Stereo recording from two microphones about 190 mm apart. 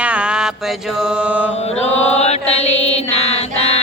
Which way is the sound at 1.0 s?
5° right (ahead or behind).